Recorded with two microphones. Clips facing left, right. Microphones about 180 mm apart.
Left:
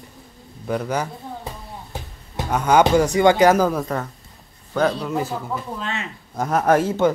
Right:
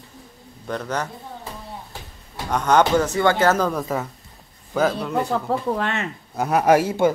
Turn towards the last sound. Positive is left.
turn(degrees=-10)  # may be behind; listen again after turning